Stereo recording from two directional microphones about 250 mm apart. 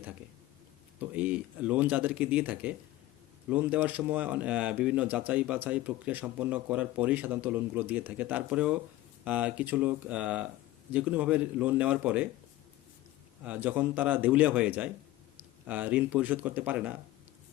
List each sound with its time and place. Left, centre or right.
1.1 s speech: centre
13.4 s a man's voice: centre